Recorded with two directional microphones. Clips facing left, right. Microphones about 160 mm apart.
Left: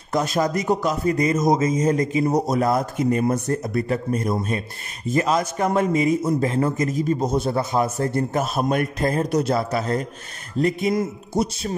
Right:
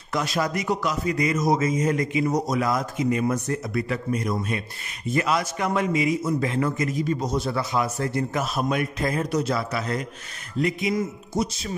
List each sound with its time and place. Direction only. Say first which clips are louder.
0.1 s a man's voice: left 4 dB; 50° left (ahead or behind); by 2.6 s 30° left (ahead or behind)
2.6 s a man's voice: left 4 dB; 55° left (ahead or behind)